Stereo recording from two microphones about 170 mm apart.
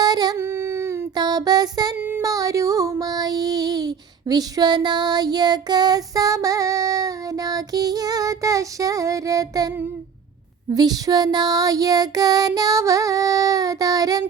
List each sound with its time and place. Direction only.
0.0 s child singing: 25° right (ahead or behind)
2.0 s music: 10° right (ahead or behind)
10.8 s child singing: 25° right (ahead or behind)